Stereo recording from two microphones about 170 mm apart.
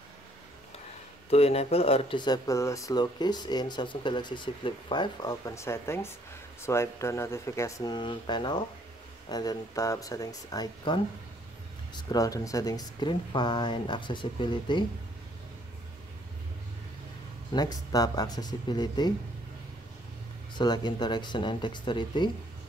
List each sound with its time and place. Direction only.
1.3 s speech: 35° left (ahead or behind)
17.5 s speech: 25° left (ahead or behind)
20.5 s speech: 25° left (ahead or behind)